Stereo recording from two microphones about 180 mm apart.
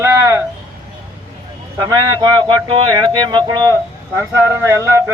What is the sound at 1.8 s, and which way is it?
Speech, 25° right (ahead or behind).